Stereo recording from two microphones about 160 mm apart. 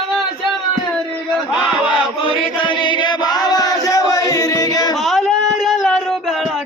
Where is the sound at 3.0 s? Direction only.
25° left (ahead or behind).